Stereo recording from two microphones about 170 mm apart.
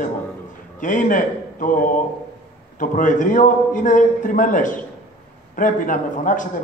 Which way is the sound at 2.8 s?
50° left (ahead or behind).